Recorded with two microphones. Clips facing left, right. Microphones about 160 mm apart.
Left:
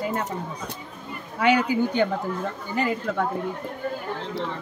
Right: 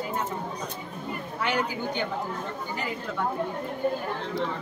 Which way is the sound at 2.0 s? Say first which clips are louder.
Left 8 dB; 65° left (ahead or behind).